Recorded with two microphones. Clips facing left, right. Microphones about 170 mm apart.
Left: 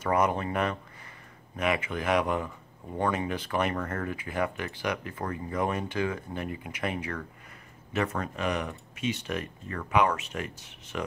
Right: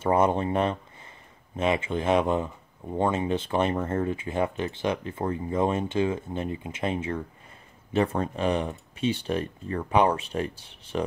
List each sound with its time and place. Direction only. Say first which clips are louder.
0.0 s speech: right 4 dB; 30° right (ahead or behind)